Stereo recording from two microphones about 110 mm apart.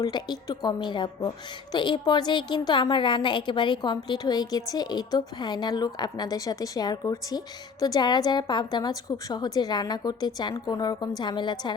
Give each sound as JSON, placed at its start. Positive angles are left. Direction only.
{"t": 0.0, "sound": "a woman's voice", "side_deg": 40}